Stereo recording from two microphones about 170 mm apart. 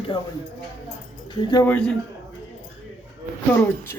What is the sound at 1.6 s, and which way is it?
Speech, 5° left (ahead or behind).